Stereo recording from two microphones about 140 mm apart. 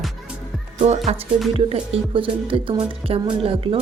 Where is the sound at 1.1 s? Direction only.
50° right (ahead or behind).